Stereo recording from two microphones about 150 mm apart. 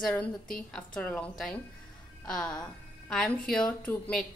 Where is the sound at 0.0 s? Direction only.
10° left (ahead or behind).